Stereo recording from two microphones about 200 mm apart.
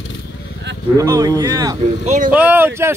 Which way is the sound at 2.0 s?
35° right (ahead or behind).